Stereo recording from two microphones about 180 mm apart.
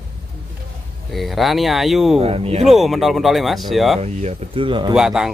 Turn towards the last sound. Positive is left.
turn(degrees=0)  # may be behind; listen again after turning